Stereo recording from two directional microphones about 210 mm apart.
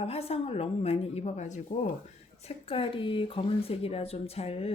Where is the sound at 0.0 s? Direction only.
30° left (ahead or behind).